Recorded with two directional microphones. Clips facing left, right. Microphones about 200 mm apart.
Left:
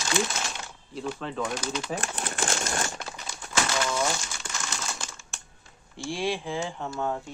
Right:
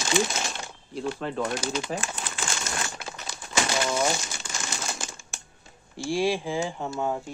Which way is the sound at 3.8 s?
25° right (ahead or behind).